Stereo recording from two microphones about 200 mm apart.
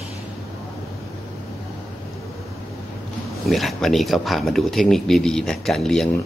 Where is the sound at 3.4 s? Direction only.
Centre (ahead or behind).